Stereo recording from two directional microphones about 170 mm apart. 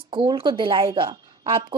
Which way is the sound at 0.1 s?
30° right (ahead or behind).